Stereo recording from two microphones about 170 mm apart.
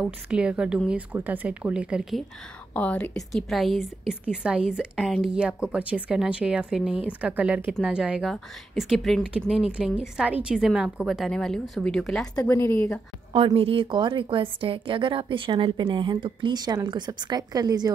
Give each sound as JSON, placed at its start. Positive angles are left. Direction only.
{"t": 0.0, "sound": "a woman's voice", "side_deg": -5}
{"t": 2.7, "sound": "a woman's voice", "side_deg": 10}
{"t": 12.4, "sound": "a woman's voice", "side_deg": 15}
{"t": 13.3, "sound": "a woman's voice", "side_deg": -30}